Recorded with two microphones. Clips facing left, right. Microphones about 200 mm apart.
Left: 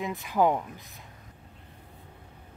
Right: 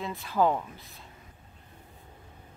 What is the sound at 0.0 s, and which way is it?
Speech, 15° left (ahead or behind).